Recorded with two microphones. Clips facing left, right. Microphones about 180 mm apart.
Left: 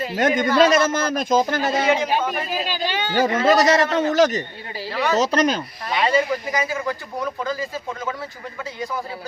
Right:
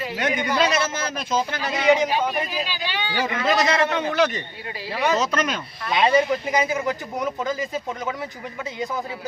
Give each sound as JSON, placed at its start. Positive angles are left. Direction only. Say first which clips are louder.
{"t": 0.0, "sound": "a man's voice", "louder": "left 5 dB", "side_deg": 40}
{"t": 0.3, "sound": "speech", "louder": "left 5 dB", "side_deg": -15}
{"t": 0.6, "sound": "a man's voice", "louder": "left 8 dB", "side_deg": 45}
{"t": 4.9, "sound": "speech", "louder": "even", "side_deg": -15}
{"t": 5.1, "sound": "a man's voice", "louder": "left 4 dB", "side_deg": 35}
{"t": 5.9, "sound": "speech", "louder": "right 1 dB", "side_deg": -20}